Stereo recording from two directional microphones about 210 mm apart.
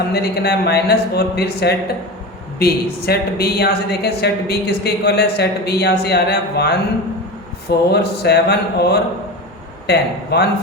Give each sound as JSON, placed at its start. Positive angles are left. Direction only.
{"t": 0.1, "sound": "a woman's voice", "side_deg": 50}
{"t": 7.9, "sound": "a woman's voice", "side_deg": 50}